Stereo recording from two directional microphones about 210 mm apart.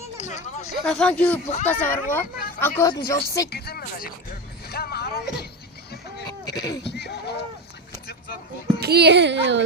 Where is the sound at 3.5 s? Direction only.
45° left (ahead or behind).